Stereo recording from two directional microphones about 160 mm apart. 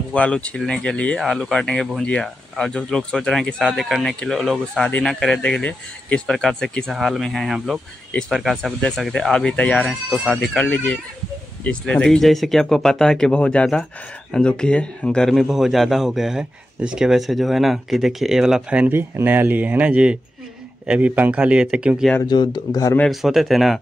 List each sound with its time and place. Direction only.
0.1 s speech: 5° left (ahead or behind)
22.2 s speech: 25° left (ahead or behind)
22.9 s speech: centre (ahead or behind)